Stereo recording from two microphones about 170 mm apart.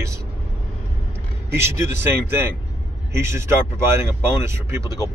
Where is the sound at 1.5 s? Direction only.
15° right (ahead or behind).